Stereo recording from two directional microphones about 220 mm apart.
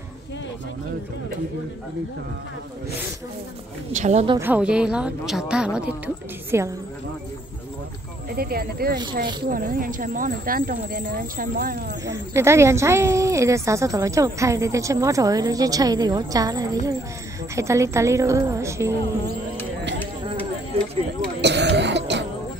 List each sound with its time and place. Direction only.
3.9 s speech: 30° right (ahead or behind)
4.4 s a woman's voice: 5° right (ahead or behind)
8.3 s speech: 45° right (ahead or behind)
12.1 s speech: 10° right (ahead or behind)
21.4 s cough: 50° right (ahead or behind)